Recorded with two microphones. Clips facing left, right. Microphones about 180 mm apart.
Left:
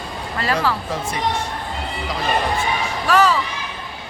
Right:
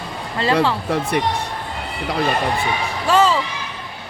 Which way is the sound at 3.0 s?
25° right (ahead or behind).